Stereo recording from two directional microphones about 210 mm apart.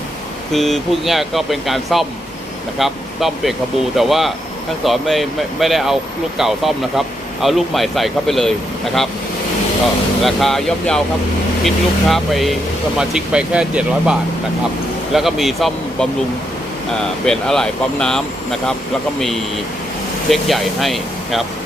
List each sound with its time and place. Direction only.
0.5 s speech: centre (ahead or behind)
10.2 s speech: centre (ahead or behind)
17.2 s speech: 5° left (ahead or behind)